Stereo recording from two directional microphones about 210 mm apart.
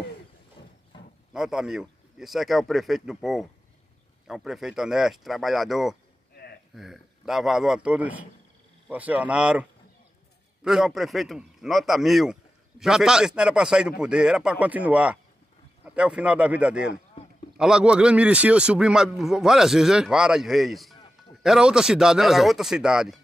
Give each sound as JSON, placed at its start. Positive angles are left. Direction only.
{"t": 1.3, "sound": "a man's voice", "side_deg": -5}
{"t": 6.3, "sound": "a sound", "side_deg": 50}
{"t": 6.7, "sound": "a man's voice", "side_deg": 0}